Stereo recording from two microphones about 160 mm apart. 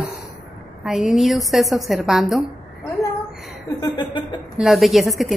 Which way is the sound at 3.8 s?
30° left (ahead or behind).